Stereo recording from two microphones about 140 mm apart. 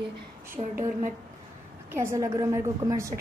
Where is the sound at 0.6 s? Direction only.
40° right (ahead or behind).